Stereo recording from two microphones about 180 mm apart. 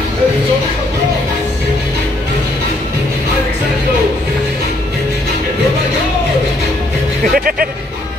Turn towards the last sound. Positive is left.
turn(degrees=-55)  # may be behind; listen again after turning